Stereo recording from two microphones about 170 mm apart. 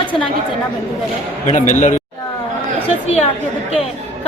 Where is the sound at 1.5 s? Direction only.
45° left (ahead or behind).